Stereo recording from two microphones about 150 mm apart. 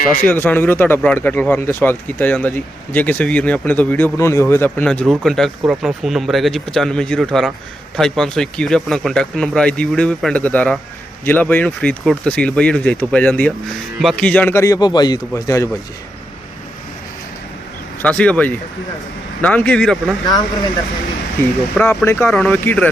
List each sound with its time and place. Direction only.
0.2 s a man's voice: 15° left (ahead or behind)
18.0 s speech: 10° left (ahead or behind)
21.8 s speech: 10° left (ahead or behind)
22.3 s speech: 5° left (ahead or behind)